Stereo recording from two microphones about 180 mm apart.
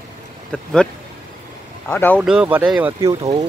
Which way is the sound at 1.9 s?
10° left (ahead or behind).